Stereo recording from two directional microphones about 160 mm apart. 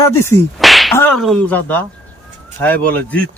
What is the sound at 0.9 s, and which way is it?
Speech, 10° left (ahead or behind).